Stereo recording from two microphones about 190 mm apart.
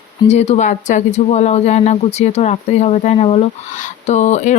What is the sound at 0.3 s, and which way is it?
Speech, 35° left (ahead or behind).